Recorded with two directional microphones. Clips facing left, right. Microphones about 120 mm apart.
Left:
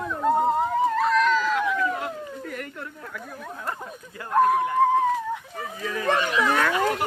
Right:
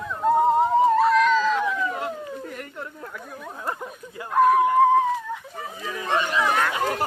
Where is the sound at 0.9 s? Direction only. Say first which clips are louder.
Right 4 dB; 20° right (ahead or behind).